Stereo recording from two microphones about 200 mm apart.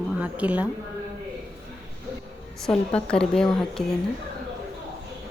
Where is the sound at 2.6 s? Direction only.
5° left (ahead or behind).